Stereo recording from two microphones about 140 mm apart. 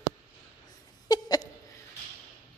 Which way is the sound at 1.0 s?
30° left (ahead or behind).